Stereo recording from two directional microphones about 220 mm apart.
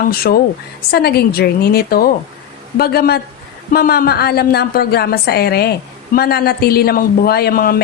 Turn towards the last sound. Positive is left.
turn(degrees=45)  # may be behind; listen again after turning